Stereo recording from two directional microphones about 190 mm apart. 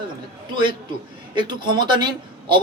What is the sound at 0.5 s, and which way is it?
A man's voice, 25° right (ahead or behind).